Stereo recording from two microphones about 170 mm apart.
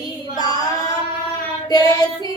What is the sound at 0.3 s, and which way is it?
Child singing, 20° left (ahead or behind).